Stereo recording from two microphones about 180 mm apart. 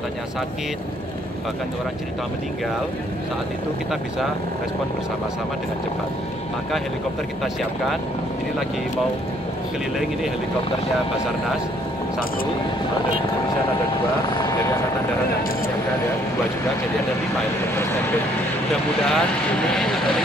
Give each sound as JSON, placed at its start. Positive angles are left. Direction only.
{"t": 14.3, "sound": "helicopter", "side_deg": 25}
{"t": 19.0, "sound": "speech", "side_deg": 5}